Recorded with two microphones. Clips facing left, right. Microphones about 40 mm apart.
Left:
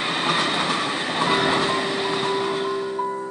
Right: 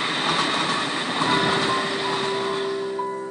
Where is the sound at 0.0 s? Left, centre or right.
Left.